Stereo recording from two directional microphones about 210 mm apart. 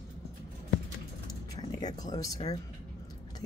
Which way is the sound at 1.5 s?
20° left (ahead or behind).